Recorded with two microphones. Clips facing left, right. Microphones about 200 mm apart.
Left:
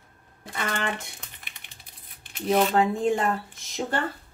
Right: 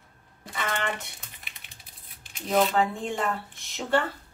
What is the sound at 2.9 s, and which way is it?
Speech, 40° left (ahead or behind).